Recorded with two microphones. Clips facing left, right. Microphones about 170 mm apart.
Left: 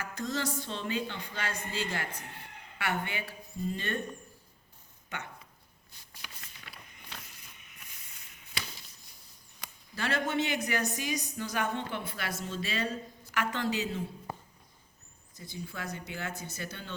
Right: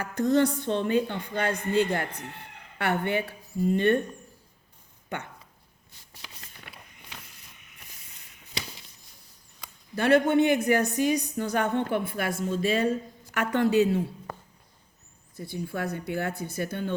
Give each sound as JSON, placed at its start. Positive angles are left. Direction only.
{"t": 0.0, "sound": "a woman's voice", "side_deg": -60}
{"t": 5.1, "sound": "a woman's voice", "side_deg": -55}
{"t": 9.9, "sound": "a woman's voice", "side_deg": -55}
{"t": 15.4, "sound": "a woman's voice", "side_deg": -55}